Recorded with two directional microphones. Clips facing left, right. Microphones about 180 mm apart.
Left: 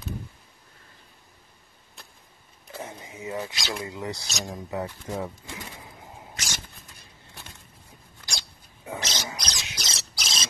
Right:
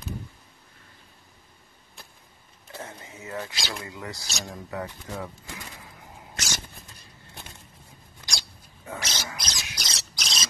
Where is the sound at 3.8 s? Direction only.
20° left (ahead or behind).